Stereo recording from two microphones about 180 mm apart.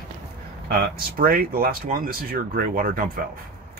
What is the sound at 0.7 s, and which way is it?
Speech, 60° right (ahead or behind).